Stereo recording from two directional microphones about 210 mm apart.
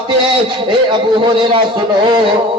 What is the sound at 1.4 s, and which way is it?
Speech, 20° right (ahead or behind).